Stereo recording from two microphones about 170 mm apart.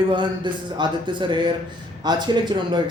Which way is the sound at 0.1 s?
25° right (ahead or behind).